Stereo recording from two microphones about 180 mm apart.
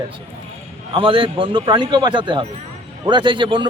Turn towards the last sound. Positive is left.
turn(degrees=-25)  # may be behind; listen again after turning